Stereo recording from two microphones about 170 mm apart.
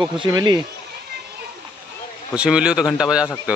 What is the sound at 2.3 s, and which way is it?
Speech, 5° right (ahead or behind).